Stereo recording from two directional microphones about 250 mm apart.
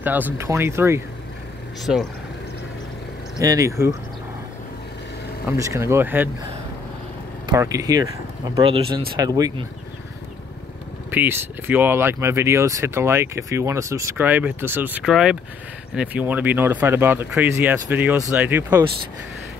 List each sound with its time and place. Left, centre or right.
0.0 s speech: centre
3.3 s speech: centre
5.6 s speech: centre
7.4 s speech: centre
11.1 s speech: centre